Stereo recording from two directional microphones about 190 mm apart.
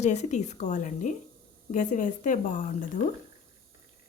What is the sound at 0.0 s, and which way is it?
A woman's voice, 35° left (ahead or behind).